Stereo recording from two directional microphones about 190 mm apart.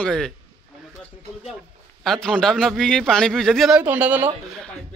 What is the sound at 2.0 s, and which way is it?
A man's voice, 5° left (ahead or behind).